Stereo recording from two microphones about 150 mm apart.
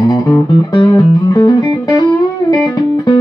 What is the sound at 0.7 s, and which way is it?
Music, 25° left (ahead or behind).